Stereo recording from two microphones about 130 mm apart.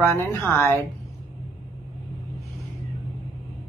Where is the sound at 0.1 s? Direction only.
20° left (ahead or behind).